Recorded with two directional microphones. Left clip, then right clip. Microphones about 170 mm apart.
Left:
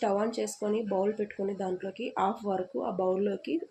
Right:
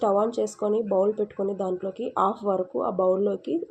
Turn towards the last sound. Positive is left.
turn(degrees=-20)  # may be behind; listen again after turning